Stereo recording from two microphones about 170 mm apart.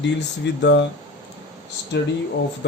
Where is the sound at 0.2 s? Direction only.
90° left.